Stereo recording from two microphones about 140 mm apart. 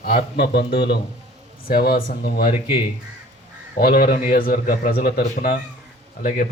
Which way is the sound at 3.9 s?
90° left.